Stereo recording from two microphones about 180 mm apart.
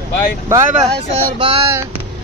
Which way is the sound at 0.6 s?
40° right (ahead or behind).